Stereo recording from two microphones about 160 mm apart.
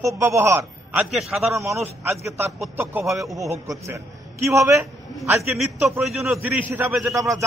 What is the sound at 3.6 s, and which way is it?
Speech, 20° right (ahead or behind).